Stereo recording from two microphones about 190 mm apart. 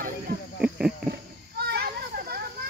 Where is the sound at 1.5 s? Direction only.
55° right (ahead or behind).